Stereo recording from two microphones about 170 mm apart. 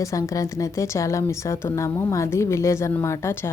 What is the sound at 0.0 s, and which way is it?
A woman's voice, 20° left (ahead or behind).